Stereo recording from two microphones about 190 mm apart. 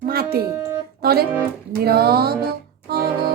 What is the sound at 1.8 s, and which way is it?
Music, 55° right (ahead or behind).